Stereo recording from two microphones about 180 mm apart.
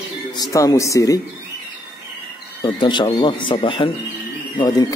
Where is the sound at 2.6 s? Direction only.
25° left (ahead or behind).